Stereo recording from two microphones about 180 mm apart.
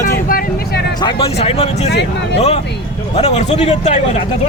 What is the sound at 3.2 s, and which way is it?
Speech, 35° left (ahead or behind).